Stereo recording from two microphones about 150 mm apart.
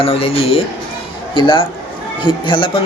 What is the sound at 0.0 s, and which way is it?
Speech, 40° left (ahead or behind).